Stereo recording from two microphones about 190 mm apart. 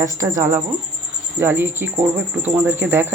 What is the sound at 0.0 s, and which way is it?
Speech, 15° right (ahead or behind).